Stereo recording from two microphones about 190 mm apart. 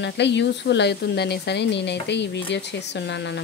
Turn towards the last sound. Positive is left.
turn(degrees=65)  # may be behind; listen again after turning